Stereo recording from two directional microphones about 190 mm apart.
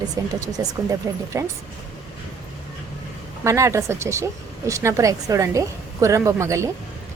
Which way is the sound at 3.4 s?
15° right (ahead or behind).